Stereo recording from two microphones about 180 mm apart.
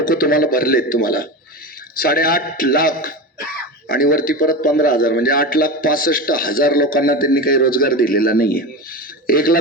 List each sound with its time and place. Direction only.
0.0 s a man's voice: 55° left (ahead or behind)